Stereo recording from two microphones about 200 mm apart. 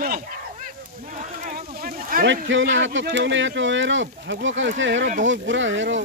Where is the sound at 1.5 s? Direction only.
45° right (ahead or behind).